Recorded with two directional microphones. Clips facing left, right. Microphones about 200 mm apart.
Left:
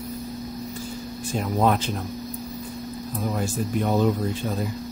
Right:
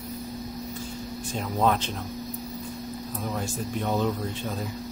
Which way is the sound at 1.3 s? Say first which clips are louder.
Left 3 dB; 10° left (ahead or behind).